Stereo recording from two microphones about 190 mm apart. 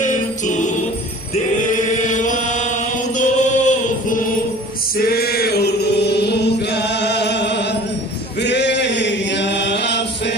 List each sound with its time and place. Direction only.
0.0 s music: 40° left (ahead or behind)
1.7 s chant: 40° left (ahead or behind)
4.9 s chant: 55° left (ahead or behind)